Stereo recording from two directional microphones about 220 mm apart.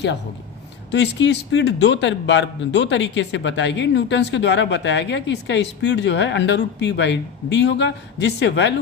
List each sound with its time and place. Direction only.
0.9 s a man's voice: 55° left (ahead or behind)